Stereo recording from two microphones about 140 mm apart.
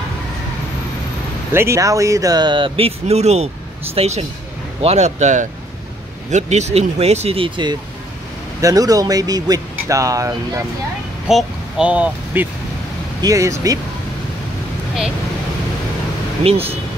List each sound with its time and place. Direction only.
1.5 s speech: 20° right (ahead or behind); by 7.7 s 35° right (ahead or behind)
8.5 s speech: 25° right (ahead or behind)
11.2 s speech: 5° right (ahead or behind)
13.2 s speech: 20° right (ahead or behind)
16.4 s speech: 45° right (ahead or behind)